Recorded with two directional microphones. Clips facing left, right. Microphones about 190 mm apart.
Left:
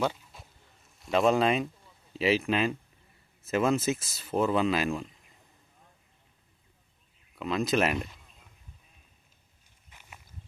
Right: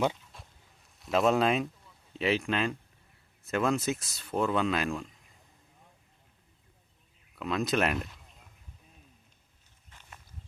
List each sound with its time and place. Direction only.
0.3 s a sound: centre (ahead or behind)
0.9 s speech: centre (ahead or behind)
7.3 s speech: centre (ahead or behind)
9.9 s walk: 10° left (ahead or behind)